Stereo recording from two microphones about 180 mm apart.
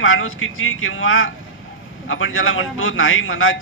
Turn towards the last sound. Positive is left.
turn(degrees=90)